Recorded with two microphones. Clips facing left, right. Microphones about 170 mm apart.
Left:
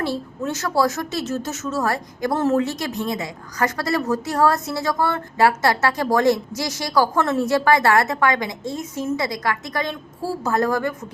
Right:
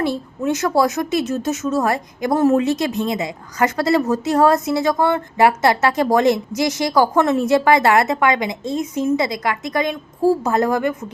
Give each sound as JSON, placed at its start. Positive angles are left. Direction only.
{"t": 0.0, "sound": "a woman's voice", "side_deg": -15}